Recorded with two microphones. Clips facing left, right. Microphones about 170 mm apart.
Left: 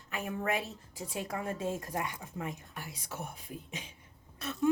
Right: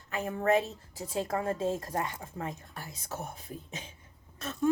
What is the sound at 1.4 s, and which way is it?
A woman's voice, 30° right (ahead or behind).